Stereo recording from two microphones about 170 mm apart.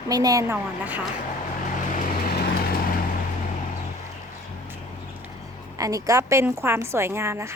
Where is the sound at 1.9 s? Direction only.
55° left (ahead or behind).